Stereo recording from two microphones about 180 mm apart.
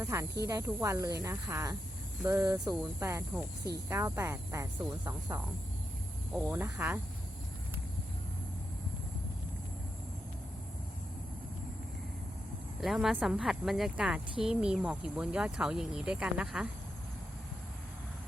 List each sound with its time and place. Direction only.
0.0 s speech: 15° right (ahead or behind)
6.5 s speech: 15° right (ahead or behind)
12.8 s speech: centre (ahead or behind)